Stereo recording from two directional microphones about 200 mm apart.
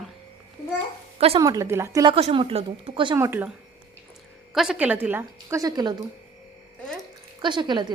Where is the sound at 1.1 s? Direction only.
30° right (ahead or behind).